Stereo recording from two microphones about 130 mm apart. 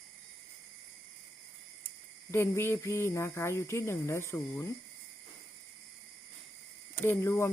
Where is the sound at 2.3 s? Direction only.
20° left (ahead or behind).